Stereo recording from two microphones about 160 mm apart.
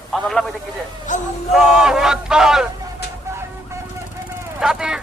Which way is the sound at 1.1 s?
50° left (ahead or behind).